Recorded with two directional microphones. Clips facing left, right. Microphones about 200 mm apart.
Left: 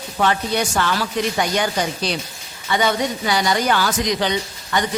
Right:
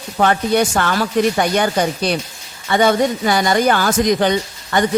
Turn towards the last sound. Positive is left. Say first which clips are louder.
# right 4 dB
turn(degrees=-50)  # may be behind; listen again after turning